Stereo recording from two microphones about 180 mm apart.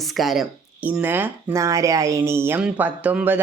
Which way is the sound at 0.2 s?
Centre (ahead or behind).